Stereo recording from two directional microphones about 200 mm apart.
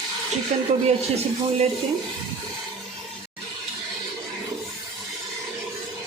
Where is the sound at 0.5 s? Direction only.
35° right (ahead or behind).